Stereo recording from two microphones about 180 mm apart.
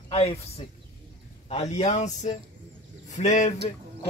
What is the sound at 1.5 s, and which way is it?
Speech, 40° left (ahead or behind).